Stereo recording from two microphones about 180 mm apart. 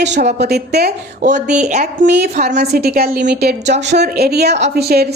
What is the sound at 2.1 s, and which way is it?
A woman's voice, 65° right (ahead or behind).